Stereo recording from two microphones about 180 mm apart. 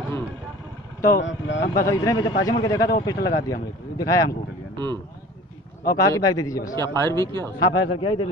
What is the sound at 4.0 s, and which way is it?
Speech, 20° left (ahead or behind).